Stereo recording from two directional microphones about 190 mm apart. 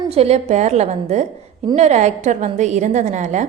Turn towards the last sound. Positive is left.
turn(degrees=-40)  # may be behind; listen again after turning